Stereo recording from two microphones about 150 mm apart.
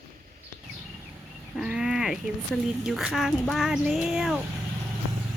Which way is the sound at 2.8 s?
5° right (ahead or behind).